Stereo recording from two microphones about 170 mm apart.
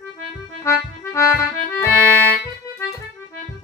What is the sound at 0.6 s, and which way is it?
Accordion, 15° left (ahead or behind).